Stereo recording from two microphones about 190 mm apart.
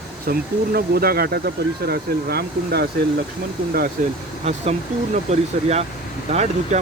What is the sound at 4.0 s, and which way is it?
Speech, 45° right (ahead or behind).